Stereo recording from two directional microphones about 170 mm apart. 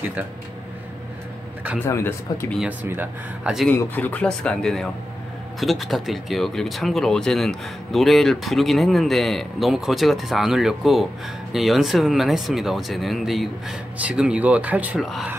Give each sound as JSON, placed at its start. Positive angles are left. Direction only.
{"t": 1.8, "sound": "speech", "side_deg": 15}
{"t": 2.6, "sound": "speech", "side_deg": -10}
{"t": 3.6, "sound": "speech", "side_deg": 10}